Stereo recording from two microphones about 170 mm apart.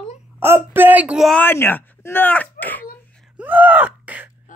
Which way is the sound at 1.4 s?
10° left (ahead or behind).